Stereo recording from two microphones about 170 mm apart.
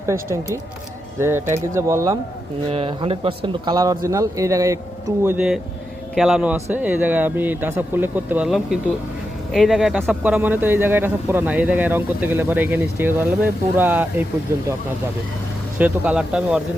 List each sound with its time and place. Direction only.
0.0 s speech: 15° right (ahead or behind)
2.7 s speech: 35° right (ahead or behind); by 4.8 s 20° right (ahead or behind)
6.1 s speech: centre (ahead or behind)
15.8 s speech: 5° right (ahead or behind)